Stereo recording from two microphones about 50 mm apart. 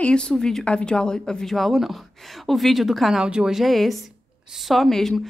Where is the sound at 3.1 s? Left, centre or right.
Centre.